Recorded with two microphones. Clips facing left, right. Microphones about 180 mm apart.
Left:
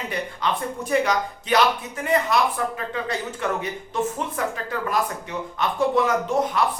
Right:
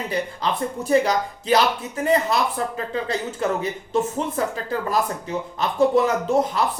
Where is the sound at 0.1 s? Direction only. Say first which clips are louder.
Right 1 dB; 30° right (ahead or behind).